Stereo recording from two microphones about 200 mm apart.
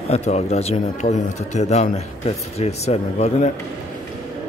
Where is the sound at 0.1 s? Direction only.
30° left (ahead or behind).